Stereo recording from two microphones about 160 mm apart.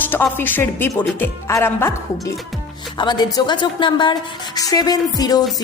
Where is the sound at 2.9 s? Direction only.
25° left (ahead or behind).